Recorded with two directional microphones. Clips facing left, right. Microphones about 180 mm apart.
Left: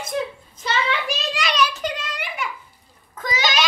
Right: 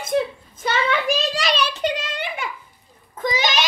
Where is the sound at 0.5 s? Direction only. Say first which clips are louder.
Right 3 dB; 50° right (ahead or behind).